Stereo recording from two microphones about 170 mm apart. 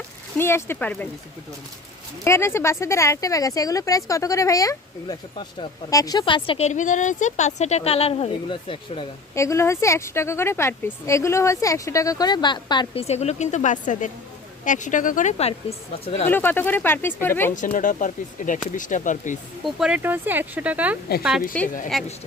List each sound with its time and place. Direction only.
0.3 s speech: 15° left (ahead or behind)
2.2 s speech: 15° left (ahead or behind); by 9.0 s 30° left (ahead or behind)
9.3 s speech: 15° left (ahead or behind); by 15.5 s 40° left (ahead or behind)
16.3 s speech: 10° left (ahead or behind)
17.5 s speech: 50° left (ahead or behind)
19.6 s speech: 5° right (ahead or behind)
21.5 s speech: 5° left (ahead or behind)